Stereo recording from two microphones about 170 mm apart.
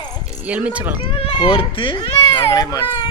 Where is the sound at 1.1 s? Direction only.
35° left (ahead or behind).